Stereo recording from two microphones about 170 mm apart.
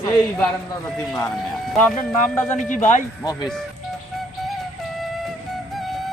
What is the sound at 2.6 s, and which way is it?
Speech, 45° left (ahead or behind).